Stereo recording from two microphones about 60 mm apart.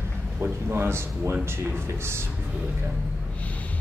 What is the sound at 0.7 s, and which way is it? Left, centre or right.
Speech, right.